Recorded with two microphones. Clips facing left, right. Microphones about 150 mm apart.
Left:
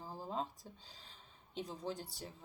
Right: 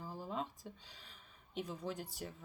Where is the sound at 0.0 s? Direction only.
30° left (ahead or behind).